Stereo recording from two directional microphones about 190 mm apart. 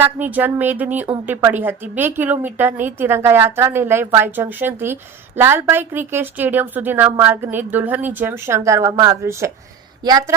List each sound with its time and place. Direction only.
0.0 s a woman's voice: 10° right (ahead or behind)